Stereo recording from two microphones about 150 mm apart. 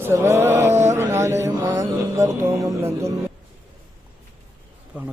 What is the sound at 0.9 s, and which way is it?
Mantra, 20° right (ahead or behind).